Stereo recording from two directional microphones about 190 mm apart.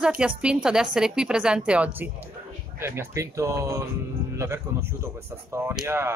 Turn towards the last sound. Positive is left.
turn(degrees=-10)  # may be behind; listen again after turning